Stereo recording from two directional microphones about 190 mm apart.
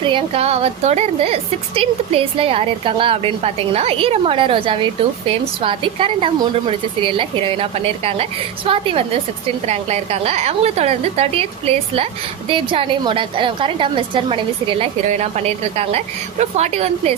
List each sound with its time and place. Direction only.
0.0 s a woman's voice: 25° right (ahead or behind)